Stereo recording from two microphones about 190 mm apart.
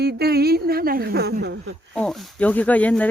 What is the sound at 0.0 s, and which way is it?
A woman's voice, 55° right (ahead or behind).